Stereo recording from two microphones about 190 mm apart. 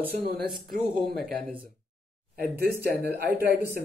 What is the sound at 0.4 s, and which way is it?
Speech, 50° right (ahead or behind).